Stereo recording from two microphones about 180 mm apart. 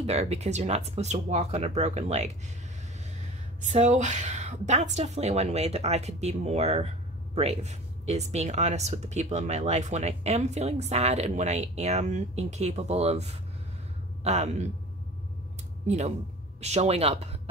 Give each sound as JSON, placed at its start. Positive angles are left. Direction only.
{"t": 0.0, "sound": "speech", "side_deg": -35}
{"t": 16.6, "sound": "speech", "side_deg": -35}